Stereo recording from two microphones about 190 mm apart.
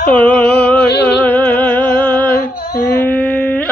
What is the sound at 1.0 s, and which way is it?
Music, 10° left (ahead or behind).